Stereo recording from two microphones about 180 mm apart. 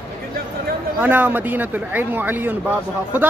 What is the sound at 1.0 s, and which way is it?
Speech, 10° right (ahead or behind).